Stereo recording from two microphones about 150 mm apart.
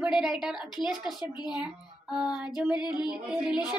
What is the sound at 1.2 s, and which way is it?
Speech, 25° left (ahead or behind).